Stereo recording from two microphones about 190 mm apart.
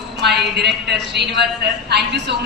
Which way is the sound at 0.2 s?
60° right (ahead or behind).